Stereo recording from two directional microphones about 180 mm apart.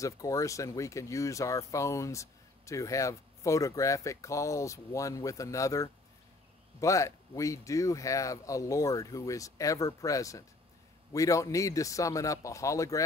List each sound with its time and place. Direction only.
0.0 s speech: 20° left (ahead or behind)